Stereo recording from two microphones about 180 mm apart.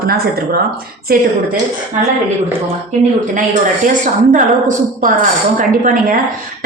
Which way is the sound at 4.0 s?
45° right (ahead or behind).